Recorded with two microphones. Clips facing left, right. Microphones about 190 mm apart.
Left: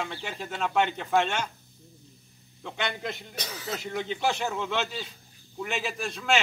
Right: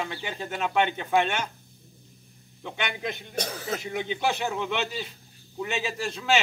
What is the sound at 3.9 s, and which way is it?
Speech, 15° right (ahead or behind).